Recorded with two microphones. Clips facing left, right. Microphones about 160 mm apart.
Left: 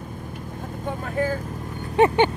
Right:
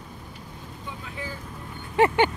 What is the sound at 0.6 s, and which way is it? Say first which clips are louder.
Vehicle: left 10 dB; 50° left (ahead or behind).